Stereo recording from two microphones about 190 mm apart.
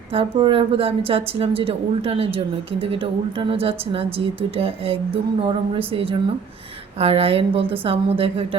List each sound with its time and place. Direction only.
0.1 s a woman's voice: 25° right (ahead or behind)